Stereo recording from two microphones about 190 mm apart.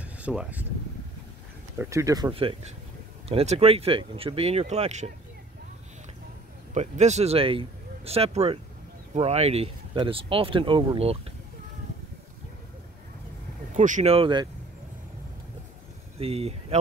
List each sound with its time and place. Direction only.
0.0 s speech: 5° right (ahead or behind)
1.8 s speech: 15° right (ahead or behind)
2.3 s speech: 30° right (ahead or behind)
6.7 s speech: 35° right (ahead or behind)
13.7 s speech: 40° right (ahead or behind)
16.2 s speech: 30° right (ahead or behind)